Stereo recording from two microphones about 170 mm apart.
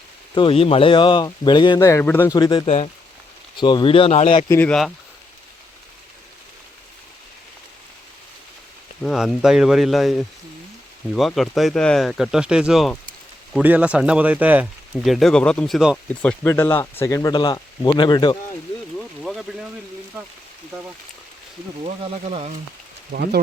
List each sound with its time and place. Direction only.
0.3 s speech: 30° left (ahead or behind)
2.6 s speech: 40° left (ahead or behind)
3.6 s speech: 25° left (ahead or behind)
4.4 s speech: 10° left (ahead or behind)
9.0 s speech: centre (ahead or behind)
16.2 s speech: 10° left (ahead or behind); by 18.3 s 25° left (ahead or behind)
18.9 s speech: centre (ahead or behind)
22.0 s speech: 35° right (ahead or behind)
23.1 s speech: 70° right (ahead or behind)